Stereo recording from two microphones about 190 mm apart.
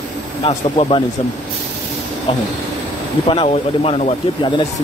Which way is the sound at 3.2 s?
30° left (ahead or behind).